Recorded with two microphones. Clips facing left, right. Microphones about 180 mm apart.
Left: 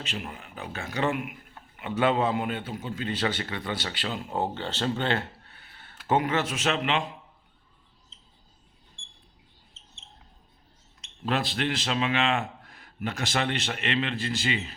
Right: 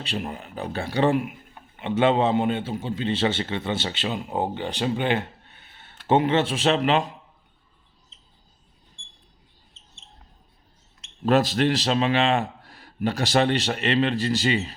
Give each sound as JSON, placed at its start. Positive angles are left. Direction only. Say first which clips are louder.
{"t": 0.0, "sound": "a man's voice", "louder": "right 6 dB", "side_deg": -35}
{"t": 11.3, "sound": "a man's voice", "louder": "right 8 dB", "side_deg": -40}